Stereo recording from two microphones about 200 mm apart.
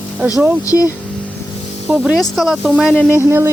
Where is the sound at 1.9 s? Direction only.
Centre (ahead or behind).